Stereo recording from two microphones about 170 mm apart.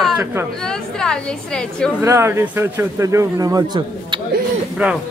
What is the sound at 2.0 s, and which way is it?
A man's voice, 15° right (ahead or behind).